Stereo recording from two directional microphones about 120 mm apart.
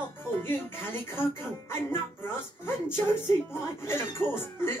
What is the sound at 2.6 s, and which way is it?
Speech, 20° left (ahead or behind).